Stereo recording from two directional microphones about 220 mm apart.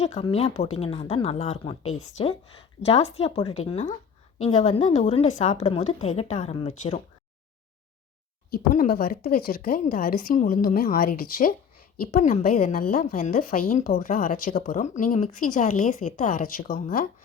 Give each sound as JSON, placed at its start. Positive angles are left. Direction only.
{"t": 0.0, "sound": "a woman's voice", "side_deg": 25}
{"t": 8.4, "sound": "a woman's voice", "side_deg": 40}